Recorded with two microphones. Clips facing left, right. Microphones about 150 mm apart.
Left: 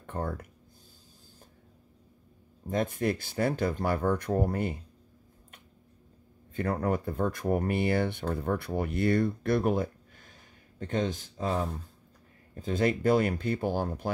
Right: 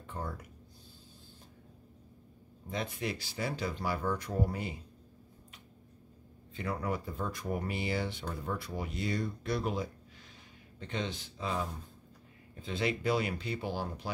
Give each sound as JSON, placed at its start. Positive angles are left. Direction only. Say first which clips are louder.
{"t": 0.0, "sound": "a sound", "louder": "left 6 dB", "side_deg": 55}
{"t": 2.7, "sound": "speech", "louder": "left 8 dB", "side_deg": 50}
{"t": 6.5, "sound": "speech", "louder": "left 6 dB", "side_deg": 50}